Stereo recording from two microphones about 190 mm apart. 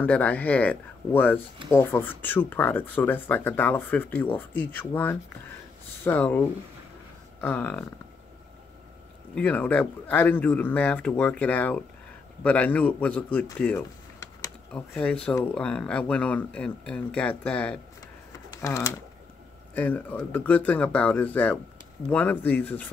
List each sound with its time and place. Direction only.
0.0 s speech: 10° left (ahead or behind)
7.3 s a sound: 10° left (ahead or behind)
9.3 s speech: 5° left (ahead or behind)
18.5 s speech: 15° left (ahead or behind)